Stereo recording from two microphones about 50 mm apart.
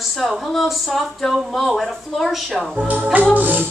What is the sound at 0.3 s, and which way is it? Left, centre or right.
A woman's voice, centre.